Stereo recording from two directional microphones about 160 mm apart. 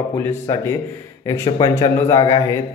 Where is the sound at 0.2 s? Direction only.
15° left (ahead or behind).